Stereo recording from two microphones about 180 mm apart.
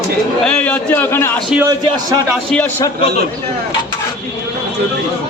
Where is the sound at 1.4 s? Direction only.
5° right (ahead or behind).